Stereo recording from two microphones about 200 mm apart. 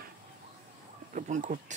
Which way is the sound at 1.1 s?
40° right (ahead or behind).